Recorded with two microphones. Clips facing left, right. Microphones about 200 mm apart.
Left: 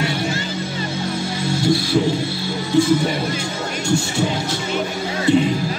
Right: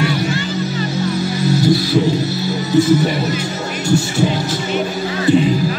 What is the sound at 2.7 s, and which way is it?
Speech, 5° right (ahead or behind).